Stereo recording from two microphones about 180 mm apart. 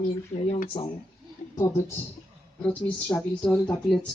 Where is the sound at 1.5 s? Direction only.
15° left (ahead or behind).